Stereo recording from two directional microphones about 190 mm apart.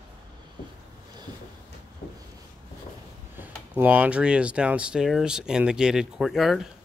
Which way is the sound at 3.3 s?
10° right (ahead or behind).